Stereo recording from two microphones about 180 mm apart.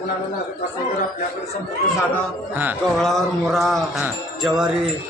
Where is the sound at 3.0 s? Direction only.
Centre (ahead or behind).